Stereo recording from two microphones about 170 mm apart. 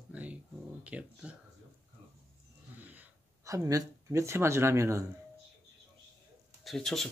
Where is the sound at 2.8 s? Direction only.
10° right (ahead or behind).